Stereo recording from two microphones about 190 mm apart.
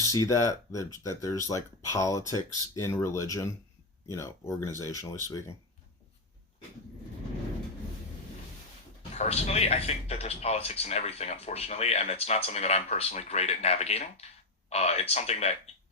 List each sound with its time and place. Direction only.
0.0 s speech: 15° left (ahead or behind)
9.1 s speech: 35° left (ahead or behind)